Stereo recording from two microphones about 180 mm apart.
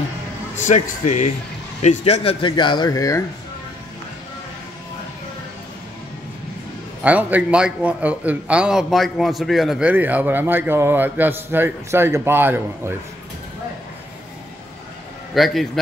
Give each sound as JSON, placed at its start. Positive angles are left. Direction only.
{"t": 0.7, "sound": "a man's voice", "side_deg": 40}
{"t": 7.0, "sound": "a man's voice", "side_deg": -10}
{"t": 15.3, "sound": "a man's voice", "side_deg": 0}